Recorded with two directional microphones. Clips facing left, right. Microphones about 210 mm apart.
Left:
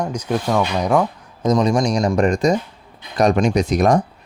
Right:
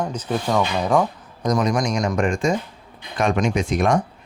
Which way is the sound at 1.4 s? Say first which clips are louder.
Left 4 dB; 25° left (ahead or behind).